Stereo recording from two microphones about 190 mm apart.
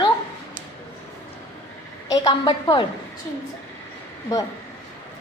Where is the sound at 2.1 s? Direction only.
20° left (ahead or behind).